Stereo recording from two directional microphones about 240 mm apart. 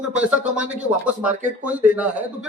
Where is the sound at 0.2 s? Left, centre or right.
Centre.